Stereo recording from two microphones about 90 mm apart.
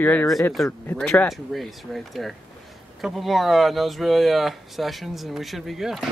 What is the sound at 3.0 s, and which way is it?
Speech, centre (ahead or behind).